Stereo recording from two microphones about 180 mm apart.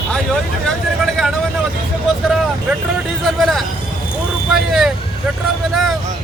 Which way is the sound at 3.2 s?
Centre (ahead or behind).